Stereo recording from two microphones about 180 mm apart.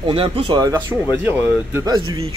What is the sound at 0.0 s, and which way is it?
Speech, 30° right (ahead or behind).